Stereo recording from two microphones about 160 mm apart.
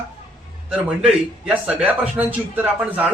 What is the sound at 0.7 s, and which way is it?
A man's voice, 5° right (ahead or behind).